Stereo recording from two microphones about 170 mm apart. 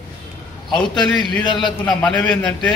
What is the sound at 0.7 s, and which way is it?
A man's voice, 5° left (ahead or behind).